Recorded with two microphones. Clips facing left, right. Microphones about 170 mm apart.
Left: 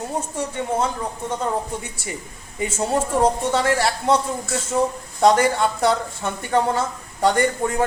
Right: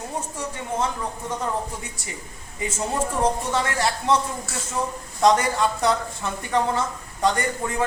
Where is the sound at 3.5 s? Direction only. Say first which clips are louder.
Left 4 dB; 30° left (ahead or behind).